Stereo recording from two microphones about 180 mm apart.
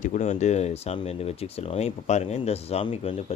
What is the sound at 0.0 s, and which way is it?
Speech, 45° left (ahead or behind).